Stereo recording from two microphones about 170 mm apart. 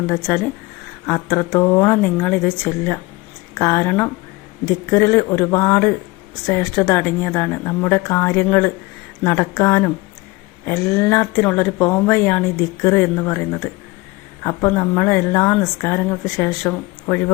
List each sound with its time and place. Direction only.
0.1 s a woman's voice: 15° left (ahead or behind)